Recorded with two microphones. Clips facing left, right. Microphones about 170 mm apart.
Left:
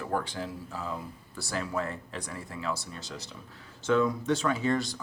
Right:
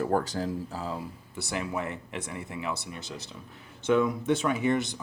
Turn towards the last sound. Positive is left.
turn(degrees=-20)  # may be behind; listen again after turning